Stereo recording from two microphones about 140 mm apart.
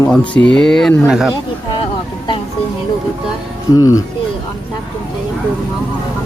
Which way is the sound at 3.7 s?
25° left (ahead or behind).